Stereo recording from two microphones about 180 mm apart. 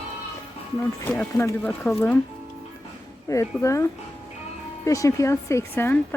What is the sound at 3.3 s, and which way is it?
Speech, 15° left (ahead or behind).